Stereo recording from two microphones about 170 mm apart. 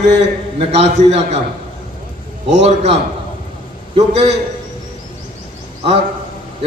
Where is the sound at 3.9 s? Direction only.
40° right (ahead or behind).